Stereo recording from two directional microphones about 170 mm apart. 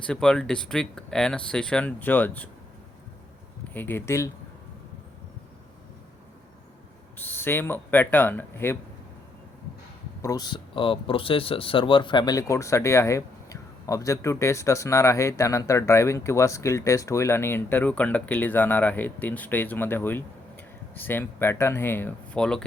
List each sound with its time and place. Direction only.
0.0 s speech: 5° left (ahead or behind)
3.7 s speech: 10° left (ahead or behind)
7.2 s speech: 10° left (ahead or behind)
10.2 s speech: 20° left (ahead or behind); by 22.6 s 5° left (ahead or behind)